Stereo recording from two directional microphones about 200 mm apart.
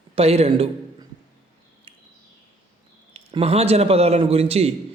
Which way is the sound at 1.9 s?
25° right (ahead or behind).